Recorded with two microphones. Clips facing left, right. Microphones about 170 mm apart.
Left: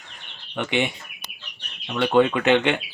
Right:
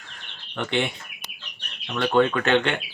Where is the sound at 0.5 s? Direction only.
15° left (ahead or behind).